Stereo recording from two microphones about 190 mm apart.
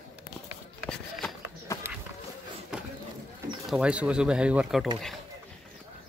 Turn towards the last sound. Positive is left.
turn(degrees=-5)  # may be behind; listen again after turning